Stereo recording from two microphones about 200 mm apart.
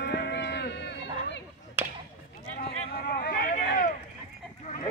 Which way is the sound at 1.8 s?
10° right (ahead or behind).